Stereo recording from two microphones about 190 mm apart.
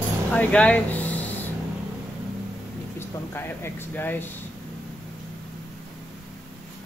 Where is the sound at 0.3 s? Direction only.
5° left (ahead or behind).